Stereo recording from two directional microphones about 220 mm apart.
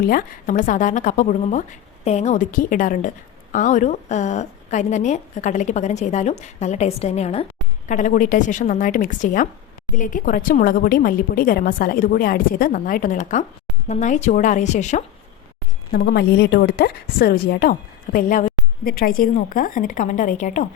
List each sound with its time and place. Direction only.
0.0 s a woman's voice: 40° left (ahead or behind)
15.9 s a woman's voice: 45° left (ahead or behind)